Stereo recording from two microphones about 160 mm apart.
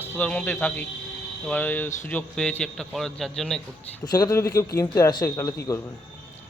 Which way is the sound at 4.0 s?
25° left (ahead or behind).